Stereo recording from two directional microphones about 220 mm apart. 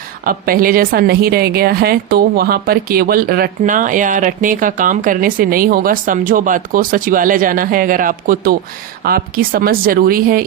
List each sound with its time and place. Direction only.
0.3 s a woman's voice: 40° right (ahead or behind)